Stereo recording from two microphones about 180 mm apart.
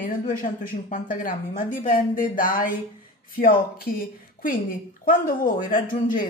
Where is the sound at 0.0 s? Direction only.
50° left (ahead or behind).